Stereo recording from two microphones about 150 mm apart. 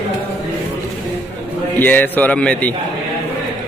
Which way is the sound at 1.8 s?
10° left (ahead or behind).